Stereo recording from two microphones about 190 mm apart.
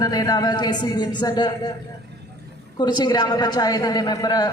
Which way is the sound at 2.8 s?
20° left (ahead or behind).